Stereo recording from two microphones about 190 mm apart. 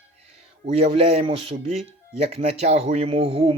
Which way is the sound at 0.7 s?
30° right (ahead or behind).